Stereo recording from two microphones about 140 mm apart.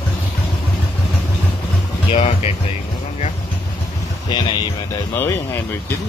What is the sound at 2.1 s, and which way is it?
Music, 50° left (ahead or behind).